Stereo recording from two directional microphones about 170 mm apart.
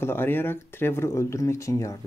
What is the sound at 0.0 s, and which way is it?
Speech, 15° left (ahead or behind).